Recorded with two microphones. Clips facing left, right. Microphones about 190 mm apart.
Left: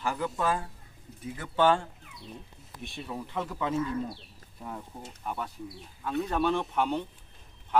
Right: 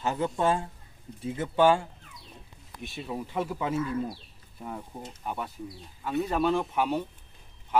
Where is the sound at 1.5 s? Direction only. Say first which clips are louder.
Right 2 dB; 10° right (ahead or behind).